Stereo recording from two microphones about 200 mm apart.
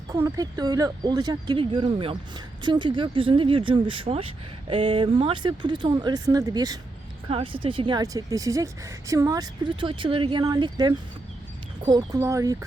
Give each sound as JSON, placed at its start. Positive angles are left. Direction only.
{"t": 0.1, "sound": "speech", "side_deg": -15}